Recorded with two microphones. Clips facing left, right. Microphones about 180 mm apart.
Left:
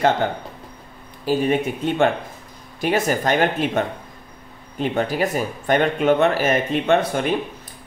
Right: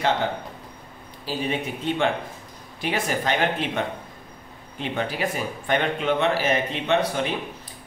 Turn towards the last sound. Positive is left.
turn(degrees=50)  # may be behind; listen again after turning